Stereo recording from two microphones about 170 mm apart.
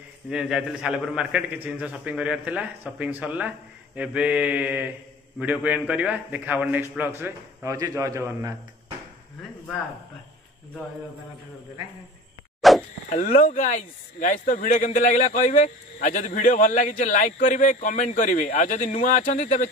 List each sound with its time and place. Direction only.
0.3 s a man's voice: 5° right (ahead or behind)
12.6 s a sound: centre (ahead or behind)
13.1 s speech: 50° left (ahead or behind)